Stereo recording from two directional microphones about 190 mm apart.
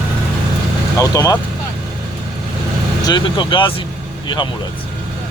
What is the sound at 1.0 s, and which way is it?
Speech, 20° left (ahead or behind).